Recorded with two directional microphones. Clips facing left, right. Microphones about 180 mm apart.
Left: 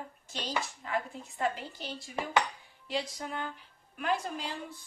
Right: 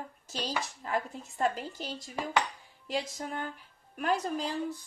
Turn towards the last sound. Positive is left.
turn(degrees=-40)  # may be behind; listen again after turning